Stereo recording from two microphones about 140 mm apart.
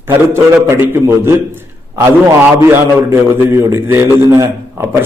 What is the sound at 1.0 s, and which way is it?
Speech, 15° right (ahead or behind).